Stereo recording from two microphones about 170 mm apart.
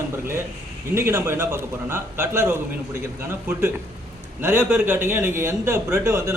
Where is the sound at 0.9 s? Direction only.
15° right (ahead or behind).